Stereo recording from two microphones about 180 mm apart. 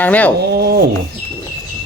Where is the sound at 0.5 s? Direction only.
60° right (ahead or behind).